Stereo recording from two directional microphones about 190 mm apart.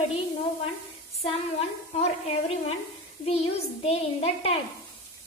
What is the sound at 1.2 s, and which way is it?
A child's voice, 35° left (ahead or behind).